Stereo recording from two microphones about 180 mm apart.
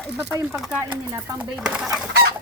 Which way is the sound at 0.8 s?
15° right (ahead or behind).